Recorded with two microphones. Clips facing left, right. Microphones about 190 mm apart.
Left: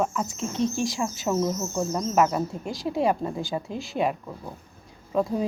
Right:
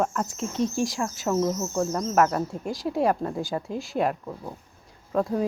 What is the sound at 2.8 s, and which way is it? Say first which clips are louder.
Speech: even; centre (ahead or behind).